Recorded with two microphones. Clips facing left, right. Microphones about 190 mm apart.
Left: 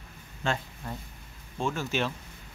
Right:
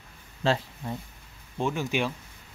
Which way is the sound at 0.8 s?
20° right (ahead or behind).